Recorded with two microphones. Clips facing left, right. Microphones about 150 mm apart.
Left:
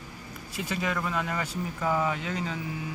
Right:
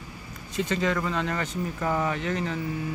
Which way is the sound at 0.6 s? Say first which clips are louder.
Right 5 dB; 10° left (ahead or behind).